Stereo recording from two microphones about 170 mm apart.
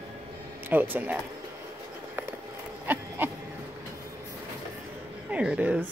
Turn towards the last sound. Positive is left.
turn(degrees=-10)  # may be behind; listen again after turning